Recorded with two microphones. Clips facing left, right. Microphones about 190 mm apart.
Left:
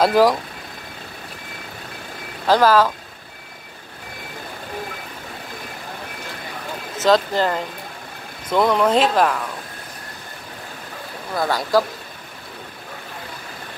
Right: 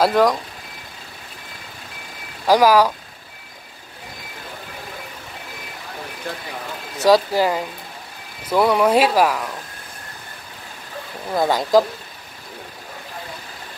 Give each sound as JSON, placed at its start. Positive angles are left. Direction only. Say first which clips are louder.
{"t": 0.0, "sound": "speech", "louder": "left 1 dB", "side_deg": 5}
{"t": 2.4, "sound": "speech", "louder": "right 1 dB", "side_deg": -10}
{"t": 7.0, "sound": "speech", "louder": "right 2 dB", "side_deg": -10}
{"t": 11.3, "sound": "speech", "louder": "right 3 dB", "side_deg": -20}